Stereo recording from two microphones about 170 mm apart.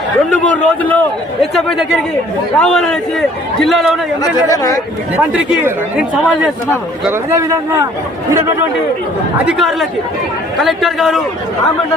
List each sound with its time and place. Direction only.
0.3 s a man's voice: 10° left (ahead or behind)
4.2 s speech: 20° left (ahead or behind)
5.1 s a man's voice: 5° right (ahead or behind)
9.5 s a man's voice: centre (ahead or behind)